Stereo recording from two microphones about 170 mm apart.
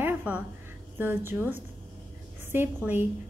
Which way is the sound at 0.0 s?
10° right (ahead or behind).